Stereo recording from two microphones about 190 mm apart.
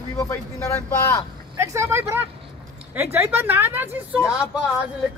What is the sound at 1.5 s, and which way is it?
Speech, 15° right (ahead or behind).